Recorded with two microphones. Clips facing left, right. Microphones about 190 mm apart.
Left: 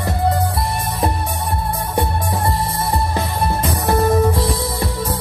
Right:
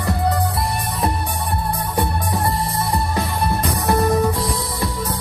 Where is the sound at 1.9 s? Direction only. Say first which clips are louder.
Left 2 dB; 25° left (ahead or behind).